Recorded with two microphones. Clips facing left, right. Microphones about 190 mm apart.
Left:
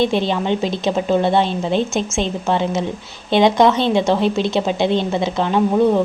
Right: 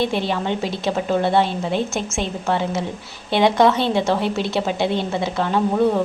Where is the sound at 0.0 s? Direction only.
20° left (ahead or behind).